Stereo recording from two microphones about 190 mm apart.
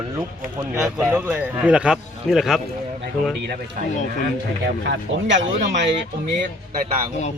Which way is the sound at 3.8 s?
45° right (ahead or behind).